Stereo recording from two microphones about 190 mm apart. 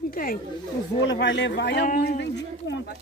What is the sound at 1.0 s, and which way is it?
Speech, 70° left (ahead or behind).